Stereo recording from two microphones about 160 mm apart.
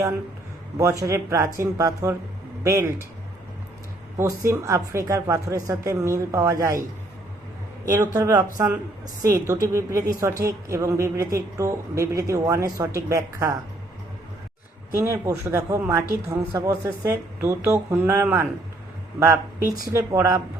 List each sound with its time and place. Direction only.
0.8 s a woman's voice: 20° right (ahead or behind)
4.2 s a woman's voice: 20° right (ahead or behind)
8.1 s a woman's voice: 20° right (ahead or behind)
14.9 s a woman's voice: 20° right (ahead or behind)